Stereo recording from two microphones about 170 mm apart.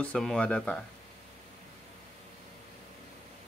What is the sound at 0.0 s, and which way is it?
Speech, 5° left (ahead or behind).